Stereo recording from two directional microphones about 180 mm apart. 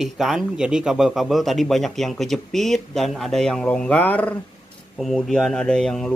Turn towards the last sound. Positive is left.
turn(degrees=5)  # may be behind; listen again after turning